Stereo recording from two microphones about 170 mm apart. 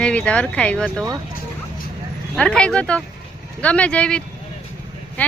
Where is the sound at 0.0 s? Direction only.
5° left (ahead or behind).